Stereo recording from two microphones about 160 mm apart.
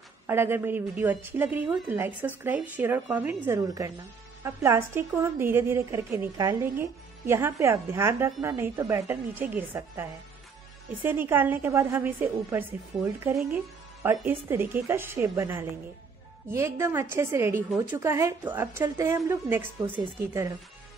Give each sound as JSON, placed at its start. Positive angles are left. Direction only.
{"t": 0.3, "sound": "a woman's voice", "side_deg": -15}